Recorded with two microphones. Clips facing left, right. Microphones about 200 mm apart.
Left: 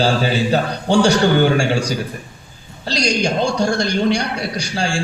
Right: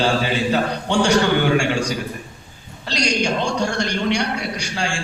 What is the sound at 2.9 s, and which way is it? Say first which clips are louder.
A man's voice: left 2 dB; 35° left (ahead or behind).